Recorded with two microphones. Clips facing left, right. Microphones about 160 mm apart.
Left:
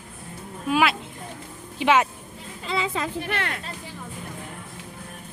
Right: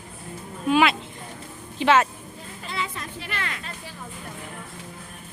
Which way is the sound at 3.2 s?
60° left (ahead or behind).